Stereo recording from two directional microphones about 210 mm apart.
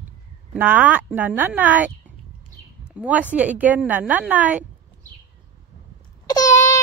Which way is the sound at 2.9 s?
5° right (ahead or behind).